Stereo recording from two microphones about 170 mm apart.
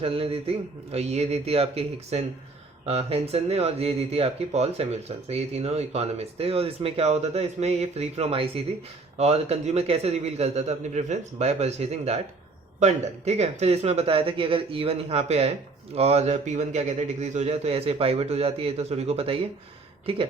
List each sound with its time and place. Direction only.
0.0 s speech: 35° right (ahead or behind)